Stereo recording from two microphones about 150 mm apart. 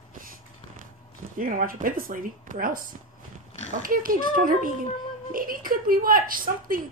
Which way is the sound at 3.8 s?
70° right (ahead or behind).